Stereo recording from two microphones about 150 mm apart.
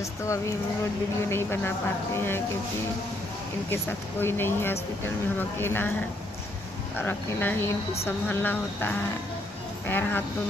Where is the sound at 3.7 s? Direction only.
15° left (ahead or behind).